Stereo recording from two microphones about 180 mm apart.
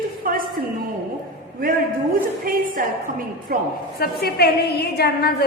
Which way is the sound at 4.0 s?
60° left (ahead or behind).